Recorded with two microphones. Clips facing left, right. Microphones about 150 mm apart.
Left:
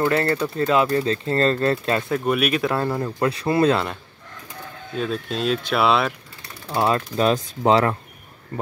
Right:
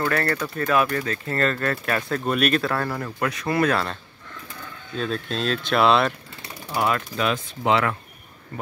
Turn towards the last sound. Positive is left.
turn(degrees=35)  # may be behind; listen again after turning